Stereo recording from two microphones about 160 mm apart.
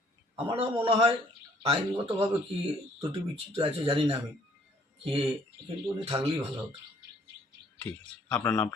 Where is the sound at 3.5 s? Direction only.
35° right (ahead or behind).